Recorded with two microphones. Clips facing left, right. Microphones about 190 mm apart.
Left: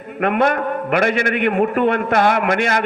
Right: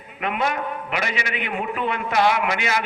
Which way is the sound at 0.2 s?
55° left (ahead or behind).